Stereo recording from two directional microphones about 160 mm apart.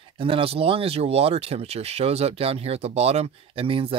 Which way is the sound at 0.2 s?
35° right (ahead or behind).